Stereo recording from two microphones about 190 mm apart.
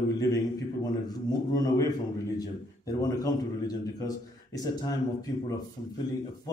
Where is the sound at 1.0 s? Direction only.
20° left (ahead or behind).